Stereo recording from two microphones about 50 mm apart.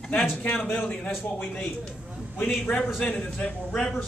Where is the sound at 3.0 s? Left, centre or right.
Left.